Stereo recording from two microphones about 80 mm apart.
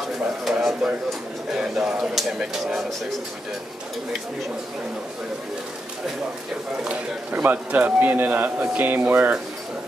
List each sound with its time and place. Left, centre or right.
0.5 s a sound: centre
1.5 s speech: centre
6.8 s a man's voice: centre